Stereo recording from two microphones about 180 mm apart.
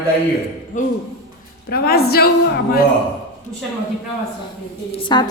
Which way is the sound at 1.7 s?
60° left (ahead or behind).